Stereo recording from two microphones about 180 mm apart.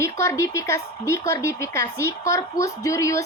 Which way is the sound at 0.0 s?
15° left (ahead or behind).